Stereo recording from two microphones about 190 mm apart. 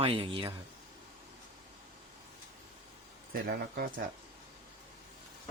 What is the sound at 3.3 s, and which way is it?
Speech, 50° right (ahead or behind).